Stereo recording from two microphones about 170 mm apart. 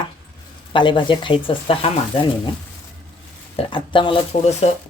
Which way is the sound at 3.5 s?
30° left (ahead or behind).